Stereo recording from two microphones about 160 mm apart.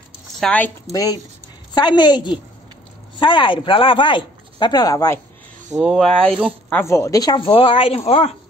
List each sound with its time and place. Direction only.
0.4 s speech: 5° left (ahead or behind)
0.9 s speech: 20° left (ahead or behind)
5.8 s speech: centre (ahead or behind)
6.7 s speech: 15° left (ahead or behind); by 8.3 s 40° left (ahead or behind)